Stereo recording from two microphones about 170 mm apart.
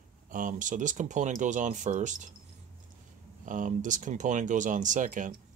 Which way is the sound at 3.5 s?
50° right (ahead or behind).